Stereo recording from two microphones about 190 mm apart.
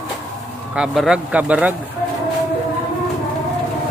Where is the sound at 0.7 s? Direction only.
5° right (ahead or behind).